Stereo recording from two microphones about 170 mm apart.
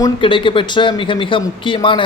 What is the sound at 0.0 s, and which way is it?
Speech, 30° left (ahead or behind).